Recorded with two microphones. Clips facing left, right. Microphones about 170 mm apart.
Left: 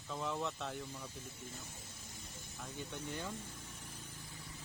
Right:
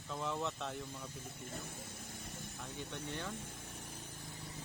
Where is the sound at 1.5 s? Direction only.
55° right (ahead or behind).